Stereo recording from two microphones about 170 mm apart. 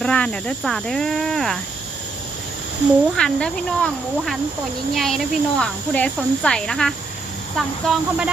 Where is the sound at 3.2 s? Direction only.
5° left (ahead or behind).